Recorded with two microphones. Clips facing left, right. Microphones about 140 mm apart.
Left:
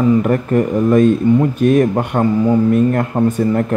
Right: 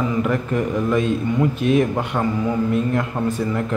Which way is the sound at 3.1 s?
30° left (ahead or behind).